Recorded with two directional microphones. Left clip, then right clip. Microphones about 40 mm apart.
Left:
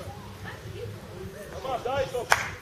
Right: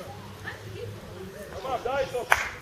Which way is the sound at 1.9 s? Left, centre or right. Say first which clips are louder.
Even; left.